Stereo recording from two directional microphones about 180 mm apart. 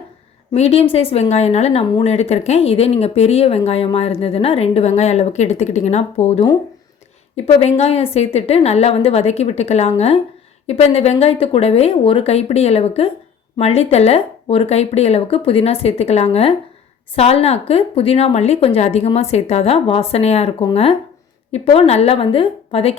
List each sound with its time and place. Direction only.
0.5 s speech: 35° left (ahead or behind)